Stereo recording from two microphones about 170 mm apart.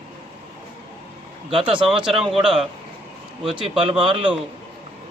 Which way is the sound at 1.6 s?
5° right (ahead or behind).